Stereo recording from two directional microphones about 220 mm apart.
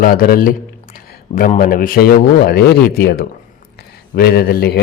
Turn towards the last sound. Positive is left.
turn(degrees=45)  # may be behind; listen again after turning